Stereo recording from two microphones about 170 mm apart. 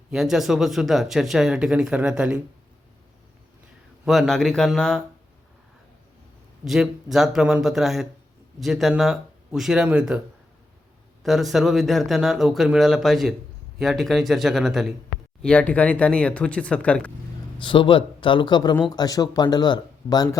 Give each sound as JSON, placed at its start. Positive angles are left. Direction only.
{"t": 0.1, "sound": "speech", "side_deg": 0}
{"t": 4.0, "sound": "speech", "side_deg": 0}
{"t": 6.7, "sound": "speech", "side_deg": 0}
{"t": 11.2, "sound": "speech", "side_deg": 0}
{"t": 17.6, "sound": "speech", "side_deg": 30}